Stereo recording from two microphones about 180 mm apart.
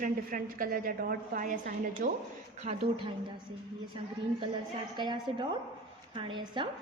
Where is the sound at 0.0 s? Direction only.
50° right (ahead or behind).